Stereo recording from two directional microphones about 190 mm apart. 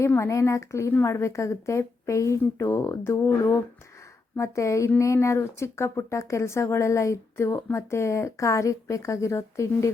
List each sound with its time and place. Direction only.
0.0 s speech: 15° left (ahead or behind)